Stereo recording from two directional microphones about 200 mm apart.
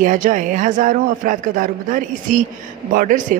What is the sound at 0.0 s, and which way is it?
A man's voice, 40° right (ahead or behind).